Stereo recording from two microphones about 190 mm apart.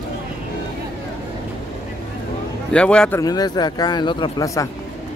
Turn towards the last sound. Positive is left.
turn(degrees=15)  # may be behind; listen again after turning